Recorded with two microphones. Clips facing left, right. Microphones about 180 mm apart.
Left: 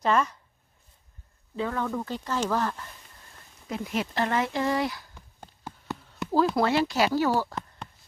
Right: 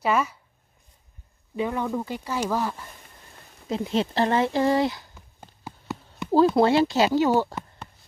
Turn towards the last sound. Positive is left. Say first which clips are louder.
# right 4 dB
turn(degrees=-20)  # may be behind; listen again after turning